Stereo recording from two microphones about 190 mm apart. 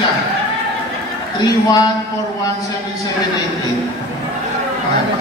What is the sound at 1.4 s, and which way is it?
Speech, 20° left (ahead or behind).